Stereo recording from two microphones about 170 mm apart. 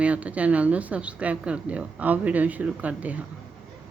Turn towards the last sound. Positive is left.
turn(degrees=-10)  # may be behind; listen again after turning